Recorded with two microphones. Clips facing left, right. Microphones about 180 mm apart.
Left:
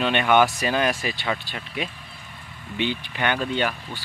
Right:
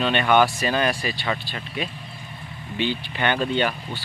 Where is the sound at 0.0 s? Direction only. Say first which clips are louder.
Even; 15° left (ahead or behind).